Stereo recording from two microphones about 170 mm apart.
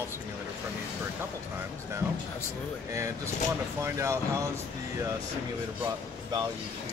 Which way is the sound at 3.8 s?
15° right (ahead or behind).